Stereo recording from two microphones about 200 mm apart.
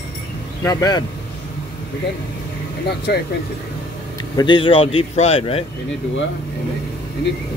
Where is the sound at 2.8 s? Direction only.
55° left (ahead or behind).